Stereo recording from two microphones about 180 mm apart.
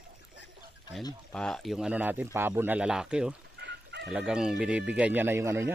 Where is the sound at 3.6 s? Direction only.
70° right (ahead or behind).